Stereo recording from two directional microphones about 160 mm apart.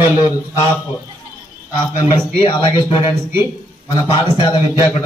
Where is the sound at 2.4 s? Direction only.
30° left (ahead or behind).